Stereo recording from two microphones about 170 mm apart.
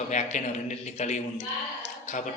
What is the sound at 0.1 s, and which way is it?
A man's voice, 45° left (ahead or behind).